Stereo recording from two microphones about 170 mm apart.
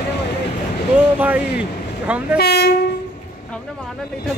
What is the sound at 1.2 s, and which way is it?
Speech, 10° right (ahead or behind).